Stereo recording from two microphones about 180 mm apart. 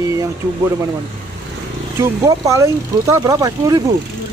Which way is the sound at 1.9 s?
15° right (ahead or behind).